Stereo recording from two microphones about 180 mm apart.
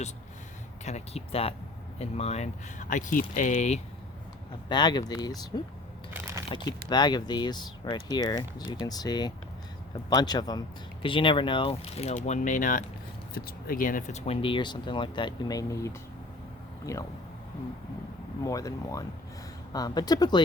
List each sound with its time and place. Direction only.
0.9 s speech: 35° left (ahead or behind)
4.7 s speech: 25° left (ahead or behind)
18.4 s speech: 20° left (ahead or behind)